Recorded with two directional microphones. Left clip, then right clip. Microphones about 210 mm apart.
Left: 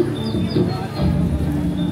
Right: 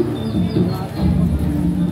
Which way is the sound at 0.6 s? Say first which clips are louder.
Left 1 dB; 55° left (ahead or behind).